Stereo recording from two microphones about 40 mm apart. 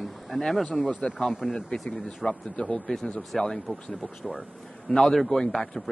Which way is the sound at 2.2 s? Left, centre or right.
Left.